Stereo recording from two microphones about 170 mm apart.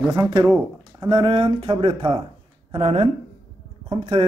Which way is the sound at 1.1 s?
30° right (ahead or behind).